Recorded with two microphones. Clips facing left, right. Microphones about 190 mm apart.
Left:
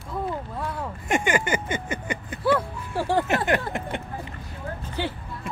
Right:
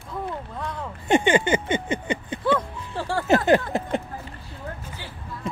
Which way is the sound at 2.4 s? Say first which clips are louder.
Left 2 dB; 10° left (ahead or behind).